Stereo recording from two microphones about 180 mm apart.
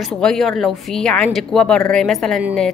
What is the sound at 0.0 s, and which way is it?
Speech, centre (ahead or behind).